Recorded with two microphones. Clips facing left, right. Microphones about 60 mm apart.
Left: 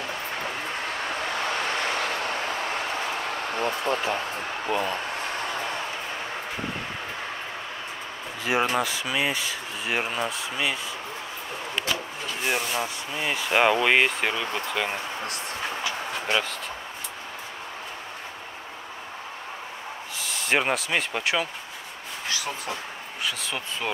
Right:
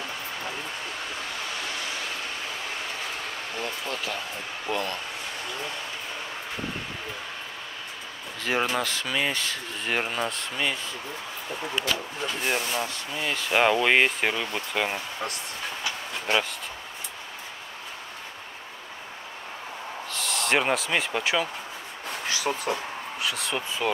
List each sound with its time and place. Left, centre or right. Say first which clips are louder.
1.4 s vehicle: left 8 dB; left
3.5 s speech: left 7 dB; left
4.6 s speech: left 2 dB; centre
8.5 s speech: left 2 dB; centre
12.4 s speech: left 2 dB; centre
16.3 s speech: right 1 dB; centre
20.2 s speech: even; centre
23.2 s speech: right 1 dB; centre